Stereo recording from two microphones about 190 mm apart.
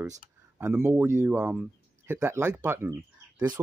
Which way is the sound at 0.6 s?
10° right (ahead or behind).